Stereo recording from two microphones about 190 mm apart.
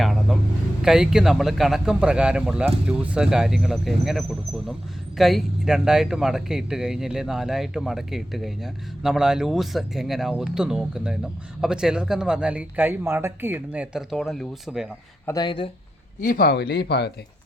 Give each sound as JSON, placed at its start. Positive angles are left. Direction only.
{"t": 0.0, "sound": "vehicle", "side_deg": 0}
{"t": 0.8, "sound": "speech", "side_deg": -5}
{"t": 15.3, "sound": "speech", "side_deg": 25}
{"t": 16.2, "sound": "speech", "side_deg": 50}